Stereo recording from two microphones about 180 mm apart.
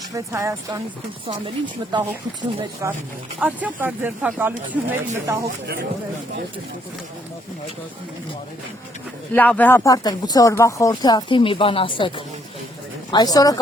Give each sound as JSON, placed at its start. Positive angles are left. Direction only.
{"t": 0.1, "sound": "speech", "side_deg": -20}
{"t": 1.9, "sound": "speech", "side_deg": -25}
{"t": 3.4, "sound": "speech", "side_deg": -10}
{"t": 9.3, "sound": "speech", "side_deg": 10}